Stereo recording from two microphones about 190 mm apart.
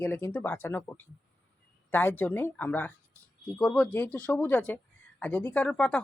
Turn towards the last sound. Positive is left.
turn(degrees=5)  # may be behind; listen again after turning